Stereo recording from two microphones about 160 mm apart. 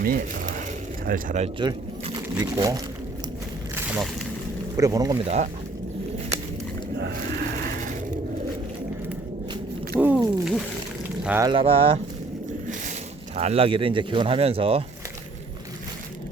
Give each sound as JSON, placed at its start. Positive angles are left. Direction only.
{"t": 1.0, "sound": "speech", "side_deg": -55}
{"t": 1.5, "sound": "speech", "side_deg": -30}
{"t": 4.8, "sound": "speech", "side_deg": -20}
{"t": 5.2, "sound": "speech", "side_deg": -45}
{"t": 7.0, "sound": "a sound", "side_deg": -90}
{"t": 10.0, "sound": "a sound", "side_deg": -10}
{"t": 11.2, "sound": "speech", "side_deg": -10}
{"t": 11.4, "sound": "speech", "side_deg": -35}
{"t": 13.3, "sound": "speech", "side_deg": -40}